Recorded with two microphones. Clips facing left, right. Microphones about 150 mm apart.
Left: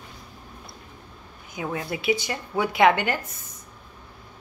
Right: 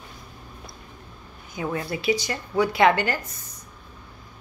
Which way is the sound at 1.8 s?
15° left (ahead or behind).